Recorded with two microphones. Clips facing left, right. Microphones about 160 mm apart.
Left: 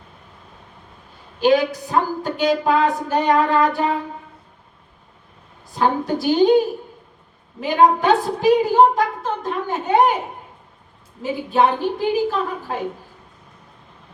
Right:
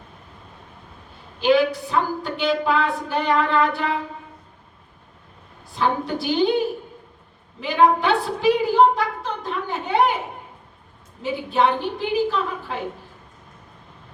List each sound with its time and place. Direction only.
1.4 s a woman's voice: 40° left (ahead or behind)
5.7 s a woman's voice: 40° left (ahead or behind)
7.6 s a woman's voice: 45° left (ahead or behind)
11.2 s a woman's voice: 45° left (ahead or behind)